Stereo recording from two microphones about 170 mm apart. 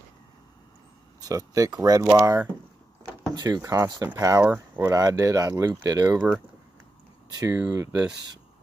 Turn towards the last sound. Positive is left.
turn(degrees=-15)  # may be behind; listen again after turning